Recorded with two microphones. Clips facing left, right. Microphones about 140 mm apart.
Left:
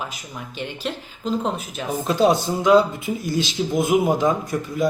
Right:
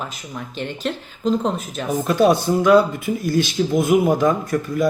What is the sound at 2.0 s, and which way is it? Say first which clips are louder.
A man's voice: right 2 dB; 20° left (ahead or behind).